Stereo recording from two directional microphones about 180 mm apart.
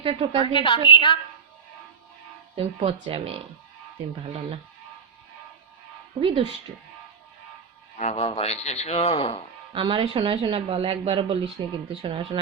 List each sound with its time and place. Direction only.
0.0 s a woman's voice: 30° right (ahead or behind)
0.3 s a woman's voice: 25° left (ahead or behind)
2.6 s speech: 35° right (ahead or behind)
6.1 s speech: 30° right (ahead or behind)
7.9 s speech: 35° left (ahead or behind)
9.7 s speech: 30° right (ahead or behind)